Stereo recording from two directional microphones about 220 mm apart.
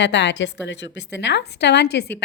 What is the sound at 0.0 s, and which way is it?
A woman's voice, 55° left (ahead or behind).